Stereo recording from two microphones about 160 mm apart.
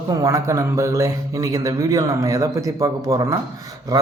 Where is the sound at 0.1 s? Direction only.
20° right (ahead or behind).